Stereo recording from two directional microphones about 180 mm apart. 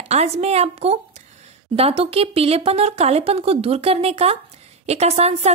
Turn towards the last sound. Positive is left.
turn(degrees=-35)  # may be behind; listen again after turning